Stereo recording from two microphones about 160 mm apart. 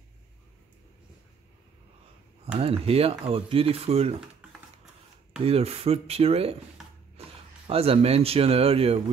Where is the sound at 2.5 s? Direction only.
40° right (ahead or behind).